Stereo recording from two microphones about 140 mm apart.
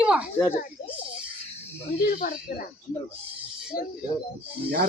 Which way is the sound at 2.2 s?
75° left (ahead or behind).